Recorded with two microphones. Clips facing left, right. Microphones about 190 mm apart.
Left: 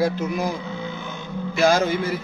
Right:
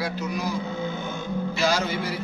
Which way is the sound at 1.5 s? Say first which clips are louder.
Left 8 dB; 50° left (ahead or behind).